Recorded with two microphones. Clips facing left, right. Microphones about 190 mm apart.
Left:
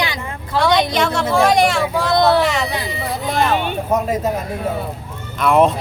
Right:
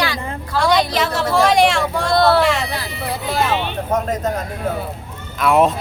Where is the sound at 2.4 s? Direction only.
Centre (ahead or behind).